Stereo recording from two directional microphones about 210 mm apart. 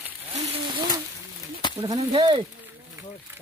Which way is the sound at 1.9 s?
30° right (ahead or behind).